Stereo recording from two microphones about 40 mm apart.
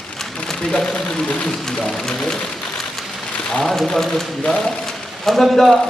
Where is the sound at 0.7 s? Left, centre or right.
Centre.